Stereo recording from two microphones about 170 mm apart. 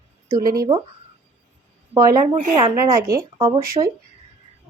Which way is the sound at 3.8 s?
25° right (ahead or behind).